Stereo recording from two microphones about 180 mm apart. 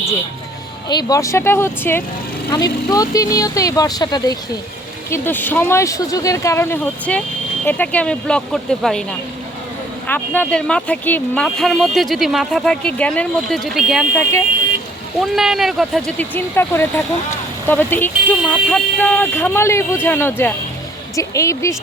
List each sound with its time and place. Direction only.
0.9 s speech: 20° left (ahead or behind)
5.1 s speech: 10° left (ahead or behind)
10.1 s speech: 10° left (ahead or behind)
15.2 s speech: centre (ahead or behind); by 21.8 s 15° left (ahead or behind)